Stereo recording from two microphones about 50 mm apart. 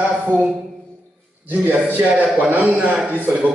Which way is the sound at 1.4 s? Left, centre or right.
Right.